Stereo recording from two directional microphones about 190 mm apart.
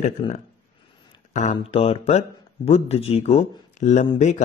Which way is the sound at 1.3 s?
35° left (ahead or behind).